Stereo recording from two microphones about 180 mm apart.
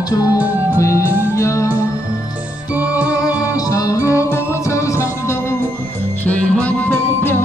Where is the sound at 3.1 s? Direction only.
20° left (ahead or behind).